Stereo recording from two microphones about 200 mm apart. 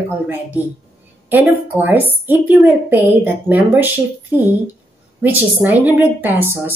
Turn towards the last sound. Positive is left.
turn(degrees=-10)  # may be behind; listen again after turning